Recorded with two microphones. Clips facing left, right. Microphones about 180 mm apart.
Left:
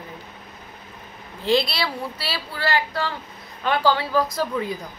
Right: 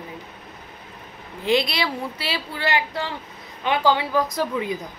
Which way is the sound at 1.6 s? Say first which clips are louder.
Right 1 dB; 15° right (ahead or behind).